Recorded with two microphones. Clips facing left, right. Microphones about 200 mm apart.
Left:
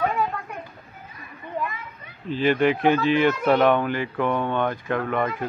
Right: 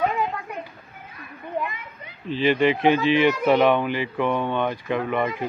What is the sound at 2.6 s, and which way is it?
Speech, 50° left (ahead or behind).